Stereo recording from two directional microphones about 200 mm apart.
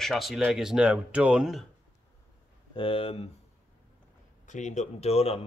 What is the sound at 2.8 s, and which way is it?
Speech, 25° left (ahead or behind).